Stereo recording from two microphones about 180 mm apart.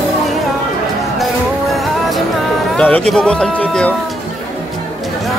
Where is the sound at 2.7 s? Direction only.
5° left (ahead or behind).